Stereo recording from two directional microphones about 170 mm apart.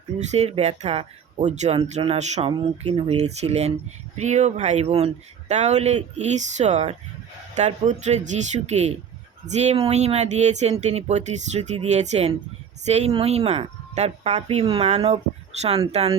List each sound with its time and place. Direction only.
0.2 s speech: 40° right (ahead or behind)